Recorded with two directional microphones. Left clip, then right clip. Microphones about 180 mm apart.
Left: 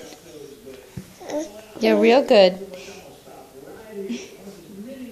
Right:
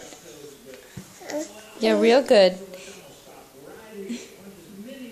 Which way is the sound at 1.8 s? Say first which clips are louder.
Left 2 dB; 20° right (ahead or behind).